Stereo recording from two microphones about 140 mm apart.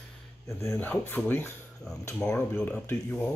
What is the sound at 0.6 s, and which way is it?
Speech, 15° left (ahead or behind).